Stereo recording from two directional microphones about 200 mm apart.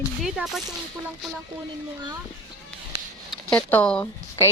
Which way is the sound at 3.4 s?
5° left (ahead or behind).